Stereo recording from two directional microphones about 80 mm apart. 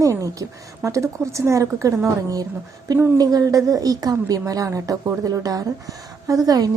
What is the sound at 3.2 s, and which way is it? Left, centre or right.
A woman's voice, right.